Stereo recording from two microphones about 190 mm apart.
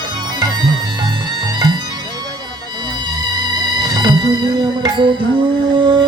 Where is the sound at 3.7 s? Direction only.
20° right (ahead or behind).